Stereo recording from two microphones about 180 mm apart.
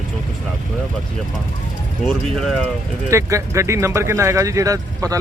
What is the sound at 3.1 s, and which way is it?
Speech, 15° right (ahead or behind).